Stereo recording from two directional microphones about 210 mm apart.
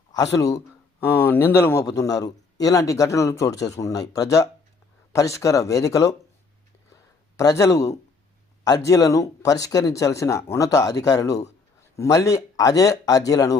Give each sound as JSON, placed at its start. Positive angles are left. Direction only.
{"t": 0.3, "sound": "a man's voice", "side_deg": 15}
{"t": 6.9, "sound": "a sound", "side_deg": 15}
{"t": 8.6, "sound": "a man's voice", "side_deg": 15}